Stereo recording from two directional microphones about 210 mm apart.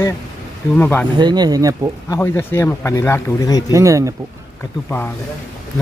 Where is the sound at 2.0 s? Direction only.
10° left (ahead or behind).